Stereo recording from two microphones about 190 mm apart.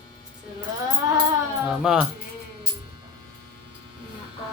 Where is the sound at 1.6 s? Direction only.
5° right (ahead or behind).